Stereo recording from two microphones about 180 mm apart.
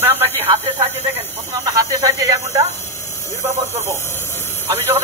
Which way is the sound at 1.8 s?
20° right (ahead or behind).